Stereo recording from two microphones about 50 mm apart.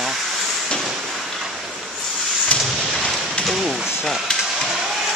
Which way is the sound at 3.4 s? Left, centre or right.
Centre.